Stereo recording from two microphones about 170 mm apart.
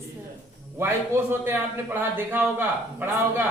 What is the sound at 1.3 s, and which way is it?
A man's voice, 15° right (ahead or behind).